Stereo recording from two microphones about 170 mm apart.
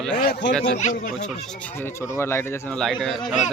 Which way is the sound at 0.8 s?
50° left (ahead or behind).